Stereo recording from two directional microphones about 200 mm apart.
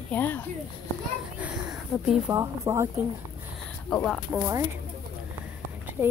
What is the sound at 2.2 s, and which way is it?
Speech, 15° right (ahead or behind).